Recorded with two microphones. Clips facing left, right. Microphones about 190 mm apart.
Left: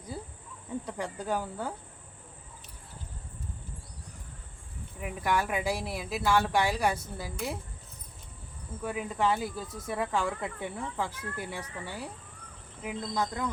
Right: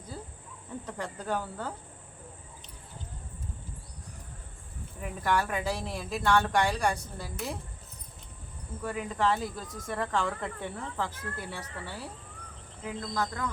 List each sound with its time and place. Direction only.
0.1 s a sound: 15° left (ahead or behind)
0.9 s speech: 10° left (ahead or behind)
4.9 s speech: 10° left (ahead or behind)
8.8 s speech: 5° left (ahead or behind)